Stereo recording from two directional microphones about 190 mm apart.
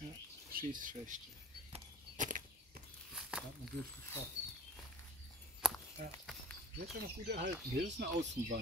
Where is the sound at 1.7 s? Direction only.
40° right (ahead or behind).